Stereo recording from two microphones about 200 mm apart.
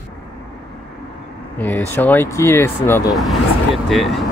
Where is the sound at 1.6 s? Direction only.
10° left (ahead or behind).